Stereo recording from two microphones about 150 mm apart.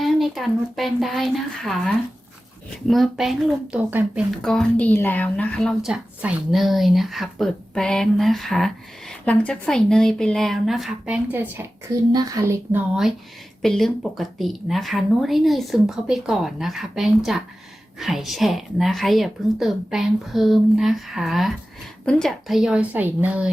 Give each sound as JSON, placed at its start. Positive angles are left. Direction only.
{"t": 0.0, "sound": "a woman's voice", "side_deg": 0}
{"t": 13.6, "sound": "speech", "side_deg": 0}